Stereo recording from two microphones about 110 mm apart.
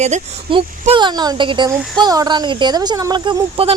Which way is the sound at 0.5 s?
50° right (ahead or behind).